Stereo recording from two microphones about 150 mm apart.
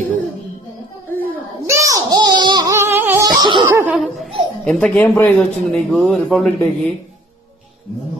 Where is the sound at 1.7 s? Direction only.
20° right (ahead or behind).